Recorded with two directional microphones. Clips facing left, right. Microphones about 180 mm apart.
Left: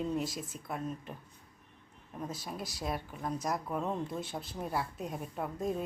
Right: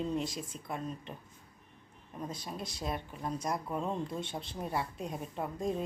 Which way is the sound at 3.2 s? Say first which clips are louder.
Left 1 dB; 25° right (ahead or behind).